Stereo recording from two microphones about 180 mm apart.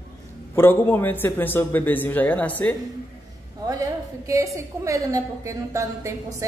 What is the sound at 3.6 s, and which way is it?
A woman's voice, 20° right (ahead or behind).